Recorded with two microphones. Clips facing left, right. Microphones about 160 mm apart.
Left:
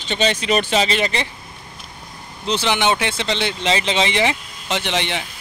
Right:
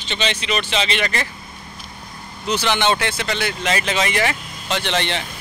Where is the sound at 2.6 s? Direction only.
15° left (ahead or behind).